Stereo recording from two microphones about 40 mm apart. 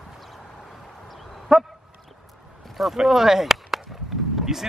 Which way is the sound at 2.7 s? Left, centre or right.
Centre.